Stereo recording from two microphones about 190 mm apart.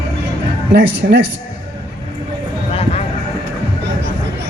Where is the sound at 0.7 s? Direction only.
60° right (ahead or behind).